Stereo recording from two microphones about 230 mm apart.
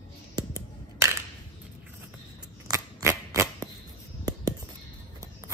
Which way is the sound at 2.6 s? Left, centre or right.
Centre.